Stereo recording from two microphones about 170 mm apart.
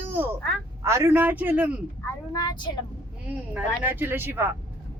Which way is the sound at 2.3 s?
25° left (ahead or behind).